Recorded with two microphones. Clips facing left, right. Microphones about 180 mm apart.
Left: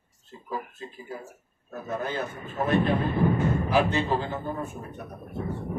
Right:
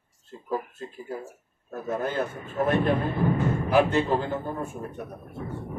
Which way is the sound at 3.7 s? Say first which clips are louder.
Right 4 dB; 50° right (ahead or behind).